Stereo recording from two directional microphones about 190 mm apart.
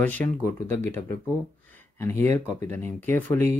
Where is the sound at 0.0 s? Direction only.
10° left (ahead or behind).